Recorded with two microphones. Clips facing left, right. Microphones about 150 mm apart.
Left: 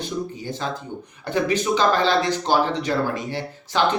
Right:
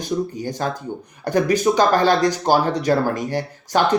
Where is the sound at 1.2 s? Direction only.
40° right (ahead or behind).